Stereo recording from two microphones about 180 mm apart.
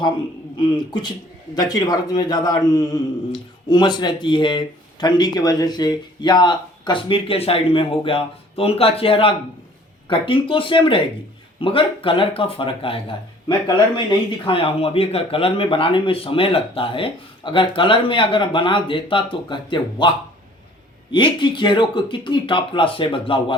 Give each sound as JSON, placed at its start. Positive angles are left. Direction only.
{"t": 0.5, "sound": "speech", "side_deg": 25}
{"t": 21.1, "sound": "speech", "side_deg": 25}